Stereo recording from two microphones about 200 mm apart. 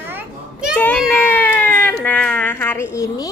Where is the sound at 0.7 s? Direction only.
5° left (ahead or behind).